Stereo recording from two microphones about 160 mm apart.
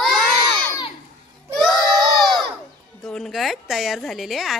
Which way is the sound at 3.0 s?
Centre (ahead or behind).